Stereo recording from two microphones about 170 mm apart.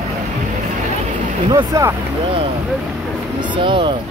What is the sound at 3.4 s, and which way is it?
Speech, 30° right (ahead or behind).